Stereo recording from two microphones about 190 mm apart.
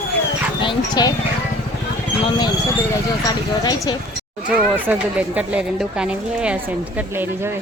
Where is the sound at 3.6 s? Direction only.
20° left (ahead or behind).